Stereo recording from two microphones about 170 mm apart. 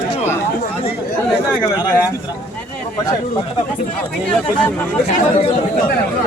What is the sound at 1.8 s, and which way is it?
Speech, 20° left (ahead or behind).